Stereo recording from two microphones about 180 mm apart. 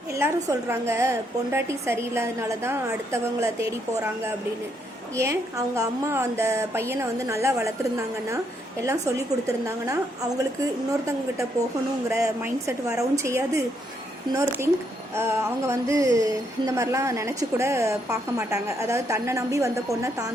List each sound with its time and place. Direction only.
0.1 s a woman's voice: 15° right (ahead or behind)
5.1 s a woman's voice: 15° right (ahead or behind)